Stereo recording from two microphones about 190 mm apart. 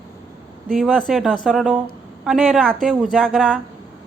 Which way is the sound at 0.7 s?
5° left (ahead or behind).